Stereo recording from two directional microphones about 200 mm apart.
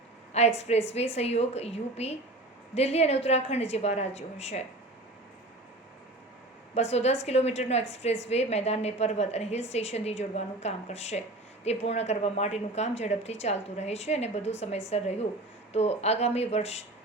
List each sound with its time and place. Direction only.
0.4 s a sound: 35° left (ahead or behind)
0.9 s a woman's voice: 30° left (ahead or behind)
6.9 s a woman's voice: 30° left (ahead or behind)